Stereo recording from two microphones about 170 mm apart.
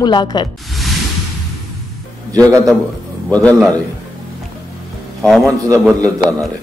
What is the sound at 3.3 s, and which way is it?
Speech, 10° left (ahead or behind).